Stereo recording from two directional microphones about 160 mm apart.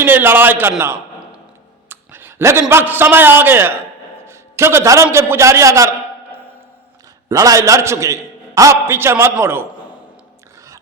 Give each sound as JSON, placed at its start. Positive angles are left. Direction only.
{"t": 0.0, "sound": "speech", "side_deg": -15}
{"t": 0.8, "sound": "a sound", "side_deg": -15}
{"t": 1.9, "sound": "a man's voice", "side_deg": -15}
{"t": 4.3, "sound": "a sound", "side_deg": -15}
{"t": 5.1, "sound": "a man's voice", "side_deg": -15}
{"t": 7.3, "sound": "a man's voice", "side_deg": -20}